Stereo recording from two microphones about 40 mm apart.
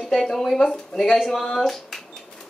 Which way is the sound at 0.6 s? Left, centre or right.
Centre.